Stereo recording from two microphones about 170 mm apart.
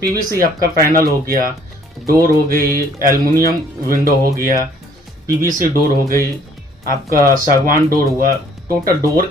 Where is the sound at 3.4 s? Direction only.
20° left (ahead or behind).